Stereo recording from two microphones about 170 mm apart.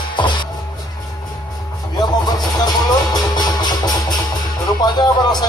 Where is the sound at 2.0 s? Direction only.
25° left (ahead or behind).